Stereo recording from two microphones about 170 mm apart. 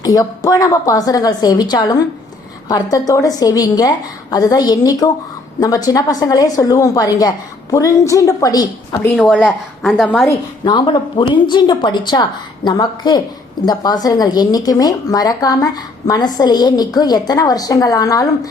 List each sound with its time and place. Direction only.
0.0 s speech: 20° left (ahead or behind)
9.1 s a woman's voice: centre (ahead or behind)
10.6 s speech: 25° left (ahead or behind)